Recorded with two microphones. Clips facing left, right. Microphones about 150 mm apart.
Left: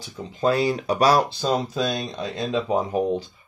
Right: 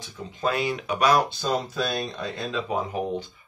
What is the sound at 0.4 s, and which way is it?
Speech, 35° left (ahead or behind).